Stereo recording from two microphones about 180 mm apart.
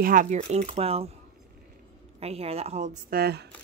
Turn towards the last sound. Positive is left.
turn(degrees=-60)  # may be behind; listen again after turning